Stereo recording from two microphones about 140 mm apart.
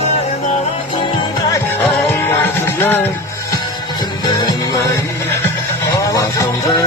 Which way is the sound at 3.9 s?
30° left (ahead or behind).